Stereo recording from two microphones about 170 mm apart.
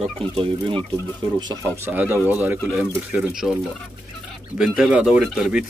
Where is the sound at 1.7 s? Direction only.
10° right (ahead or behind).